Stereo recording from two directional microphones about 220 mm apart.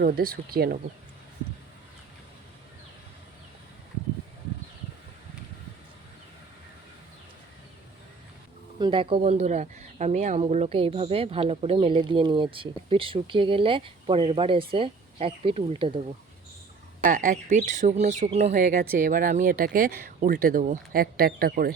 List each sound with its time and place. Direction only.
0.0 s speech: 40° right (ahead or behind)
8.8 s speech: 25° right (ahead or behind)
17.0 s speech: 40° right (ahead or behind)